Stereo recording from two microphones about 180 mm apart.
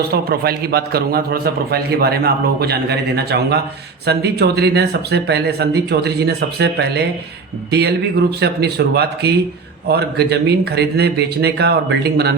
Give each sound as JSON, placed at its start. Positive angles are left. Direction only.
{"t": 0.1, "sound": "a man's voice", "side_deg": -60}